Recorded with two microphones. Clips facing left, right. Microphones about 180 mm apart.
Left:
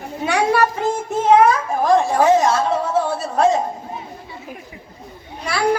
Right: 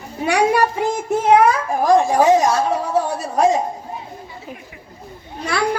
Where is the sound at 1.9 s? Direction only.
15° right (ahead or behind).